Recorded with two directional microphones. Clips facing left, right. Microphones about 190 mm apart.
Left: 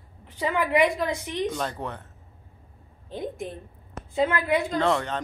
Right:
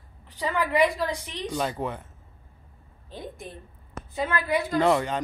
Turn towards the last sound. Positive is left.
turn(degrees=-10)  # may be behind; listen again after turning